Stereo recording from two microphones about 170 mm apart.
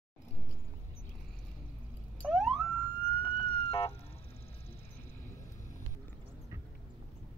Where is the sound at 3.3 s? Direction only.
30° left (ahead or behind).